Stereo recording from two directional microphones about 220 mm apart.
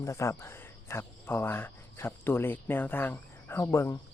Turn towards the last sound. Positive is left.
turn(degrees=10)  # may be behind; listen again after turning